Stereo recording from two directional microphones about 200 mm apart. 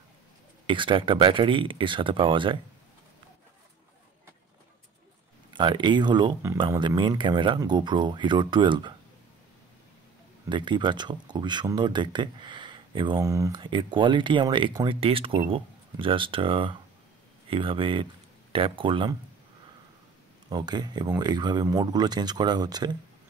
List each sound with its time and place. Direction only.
0.7 s speech: 25° right (ahead or behind)
5.5 s speech: 25° right (ahead or behind)
10.5 s speech: 25° right (ahead or behind)
20.4 s speech: 20° right (ahead or behind)